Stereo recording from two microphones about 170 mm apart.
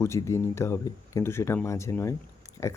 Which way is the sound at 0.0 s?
15° left (ahead or behind).